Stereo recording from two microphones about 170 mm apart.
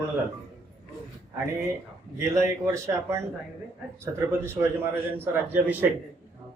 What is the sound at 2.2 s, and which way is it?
A man's voice, 20° right (ahead or behind).